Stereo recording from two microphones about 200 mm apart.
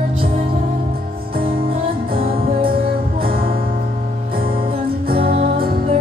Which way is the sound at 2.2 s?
50° right (ahead or behind).